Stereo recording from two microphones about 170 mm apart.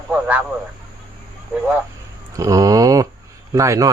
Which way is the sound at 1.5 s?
10° right (ahead or behind).